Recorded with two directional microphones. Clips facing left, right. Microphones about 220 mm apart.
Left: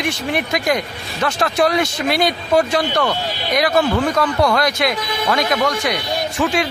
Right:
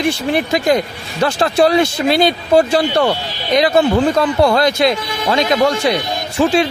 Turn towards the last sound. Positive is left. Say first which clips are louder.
# right 5 dB
turn(degrees=-30)  # may be behind; listen again after turning